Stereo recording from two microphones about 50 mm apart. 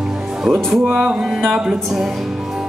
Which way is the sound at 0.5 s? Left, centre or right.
Centre.